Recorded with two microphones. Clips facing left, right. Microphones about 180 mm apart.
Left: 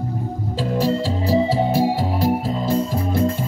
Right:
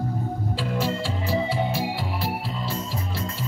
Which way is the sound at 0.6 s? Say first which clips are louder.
Left 8 dB; 35° left (ahead or behind).